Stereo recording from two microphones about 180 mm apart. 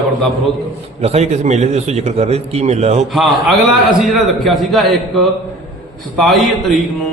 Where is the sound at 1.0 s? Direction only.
35° right (ahead or behind).